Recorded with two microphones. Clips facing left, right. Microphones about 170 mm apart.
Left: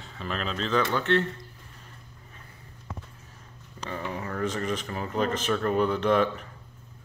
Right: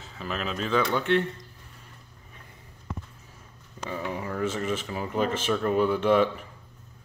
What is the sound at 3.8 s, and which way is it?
Speech, 10° right (ahead or behind).